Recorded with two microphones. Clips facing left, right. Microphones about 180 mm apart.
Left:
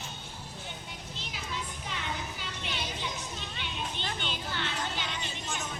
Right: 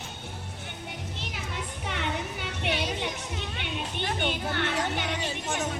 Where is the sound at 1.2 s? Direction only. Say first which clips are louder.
Even; 65° right (ahead or behind).